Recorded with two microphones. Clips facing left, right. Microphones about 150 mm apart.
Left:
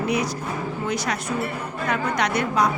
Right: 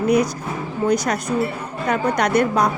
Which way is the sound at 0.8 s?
45° right (ahead or behind).